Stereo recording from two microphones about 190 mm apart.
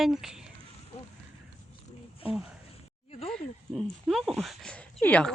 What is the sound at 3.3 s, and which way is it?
Speech, centre (ahead or behind).